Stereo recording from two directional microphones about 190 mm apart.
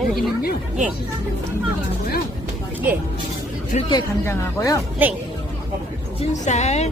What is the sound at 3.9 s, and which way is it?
Speech, 20° left (ahead or behind).